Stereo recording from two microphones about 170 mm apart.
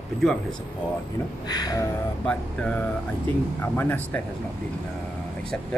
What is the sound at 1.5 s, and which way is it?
Speech, 20° left (ahead or behind).